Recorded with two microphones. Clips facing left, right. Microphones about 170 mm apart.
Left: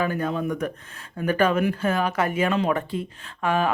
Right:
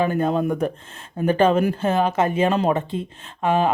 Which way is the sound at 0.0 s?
25° right (ahead or behind).